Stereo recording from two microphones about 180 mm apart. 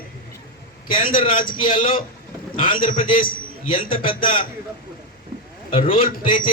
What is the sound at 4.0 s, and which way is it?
Speech, 30° left (ahead or behind).